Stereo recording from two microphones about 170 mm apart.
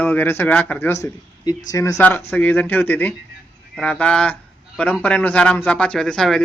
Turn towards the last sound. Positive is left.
turn(degrees=0)  # may be behind; listen again after turning